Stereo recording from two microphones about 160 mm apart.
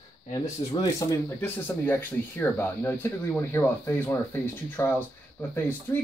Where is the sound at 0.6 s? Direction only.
40° left (ahead or behind).